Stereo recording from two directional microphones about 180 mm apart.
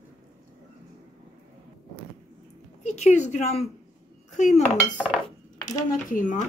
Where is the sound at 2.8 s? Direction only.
40° left (ahead or behind).